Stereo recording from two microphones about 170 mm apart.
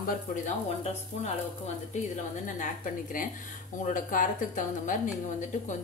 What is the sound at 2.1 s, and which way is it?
A woman's voice, 50° left (ahead or behind).